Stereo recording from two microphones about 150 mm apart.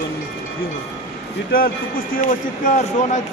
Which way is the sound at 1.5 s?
75° left (ahead or behind).